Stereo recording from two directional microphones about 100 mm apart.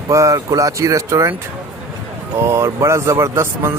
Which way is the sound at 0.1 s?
30° right (ahead or behind).